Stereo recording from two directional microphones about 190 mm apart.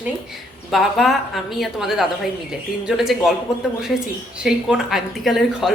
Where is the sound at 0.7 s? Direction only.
Centre (ahead or behind).